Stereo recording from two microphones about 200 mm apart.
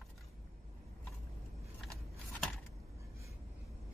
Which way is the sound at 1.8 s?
Centre (ahead or behind).